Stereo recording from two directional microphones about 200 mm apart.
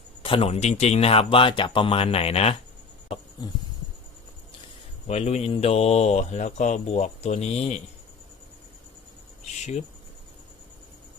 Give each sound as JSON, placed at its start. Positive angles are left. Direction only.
{"t": 0.2, "sound": "speech", "side_deg": 30}
{"t": 5.0, "sound": "speech", "side_deg": 35}